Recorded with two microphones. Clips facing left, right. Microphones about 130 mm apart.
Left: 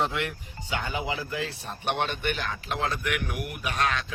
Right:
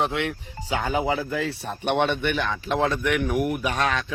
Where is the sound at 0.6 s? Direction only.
45° right (ahead or behind).